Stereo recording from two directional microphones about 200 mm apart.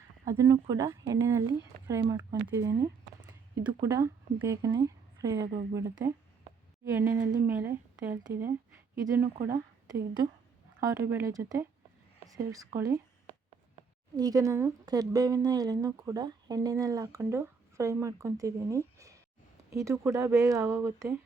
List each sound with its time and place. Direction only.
0.3 s a woman's voice: 15° right (ahead or behind)